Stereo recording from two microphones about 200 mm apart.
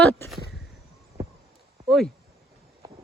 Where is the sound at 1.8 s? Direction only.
Centre (ahead or behind).